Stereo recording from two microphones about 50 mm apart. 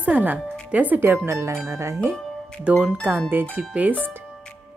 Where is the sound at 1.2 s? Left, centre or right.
Right.